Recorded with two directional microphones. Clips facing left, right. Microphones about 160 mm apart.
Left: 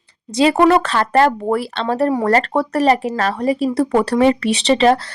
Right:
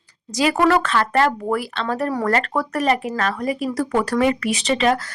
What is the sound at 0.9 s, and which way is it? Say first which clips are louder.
Speech: left 4 dB; 35° left (ahead or behind).